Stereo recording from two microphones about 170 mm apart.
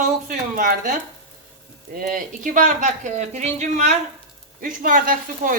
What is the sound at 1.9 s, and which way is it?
Speech, 55° right (ahead or behind).